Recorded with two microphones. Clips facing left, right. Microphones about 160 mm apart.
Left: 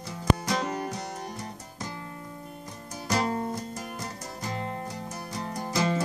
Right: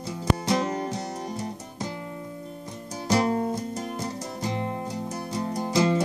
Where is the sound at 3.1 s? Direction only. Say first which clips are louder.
Right 4 dB; 20° right (ahead or behind).